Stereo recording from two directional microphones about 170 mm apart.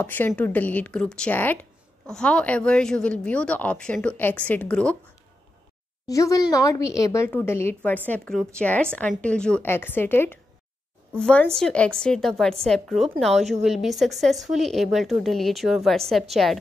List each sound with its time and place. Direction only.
0.0 s speech: 10° left (ahead or behind)
6.0 s a woman's voice: 20° left (ahead or behind); by 16.5 s centre (ahead or behind)